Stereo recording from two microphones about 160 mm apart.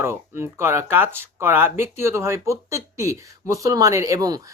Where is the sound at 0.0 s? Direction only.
15° right (ahead or behind).